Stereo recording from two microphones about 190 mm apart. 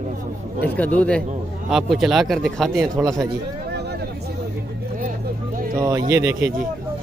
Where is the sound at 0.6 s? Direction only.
10° left (ahead or behind).